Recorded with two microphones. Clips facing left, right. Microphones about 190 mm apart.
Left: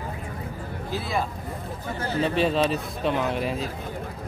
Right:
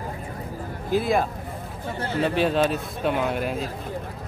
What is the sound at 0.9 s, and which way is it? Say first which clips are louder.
Speech: right 7 dB; 50° right (ahead or behind).